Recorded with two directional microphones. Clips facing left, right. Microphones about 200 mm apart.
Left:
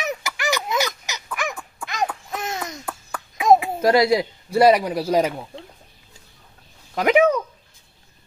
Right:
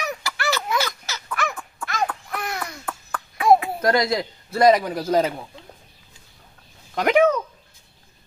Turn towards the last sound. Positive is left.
turn(degrees=5)  # may be behind; listen again after turning